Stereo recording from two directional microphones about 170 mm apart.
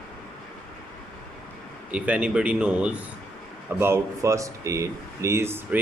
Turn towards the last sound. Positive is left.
turn(degrees=-15)  # may be behind; listen again after turning